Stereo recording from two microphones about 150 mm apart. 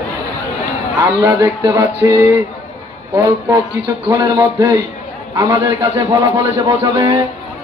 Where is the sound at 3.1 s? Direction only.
20° right (ahead or behind).